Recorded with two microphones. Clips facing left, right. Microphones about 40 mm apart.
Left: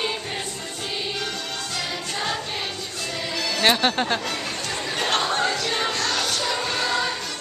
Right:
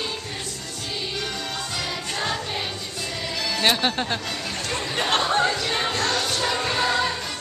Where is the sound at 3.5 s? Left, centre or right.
Centre.